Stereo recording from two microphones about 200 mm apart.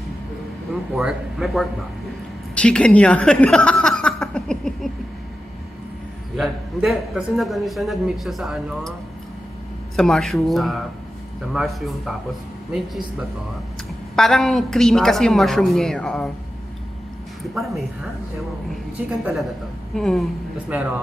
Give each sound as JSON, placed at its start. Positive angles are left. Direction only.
{"t": 0.9, "sound": "a man's voice", "side_deg": 0}
{"t": 6.3, "sound": "a man's voice", "side_deg": 0}
{"t": 9.9, "sound": "a man's voice", "side_deg": 0}
{"t": 14.1, "sound": "a man's voice", "side_deg": 0}
{"t": 17.6, "sound": "a man's voice", "side_deg": 0}
{"t": 19.0, "sound": "a man's voice", "side_deg": 0}